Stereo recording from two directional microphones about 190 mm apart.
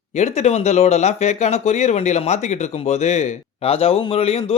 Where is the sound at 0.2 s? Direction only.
35° left (ahead or behind).